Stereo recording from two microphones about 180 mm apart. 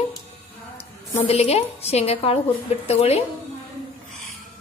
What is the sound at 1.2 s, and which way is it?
A woman's voice, 35° left (ahead or behind).